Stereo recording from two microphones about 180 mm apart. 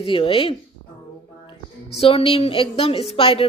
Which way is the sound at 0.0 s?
30° left (ahead or behind).